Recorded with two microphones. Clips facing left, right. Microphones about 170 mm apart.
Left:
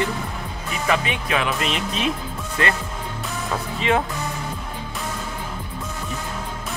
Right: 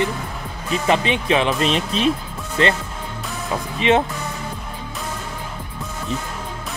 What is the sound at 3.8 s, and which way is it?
Speech, 20° right (ahead or behind).